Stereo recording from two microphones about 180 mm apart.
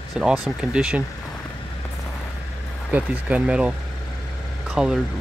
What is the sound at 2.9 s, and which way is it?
Speech, 10° right (ahead or behind).